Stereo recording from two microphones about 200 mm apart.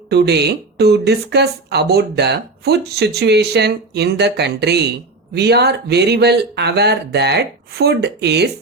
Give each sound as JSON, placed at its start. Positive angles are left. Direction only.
{"t": 0.1, "sound": "a woman's voice", "side_deg": -55}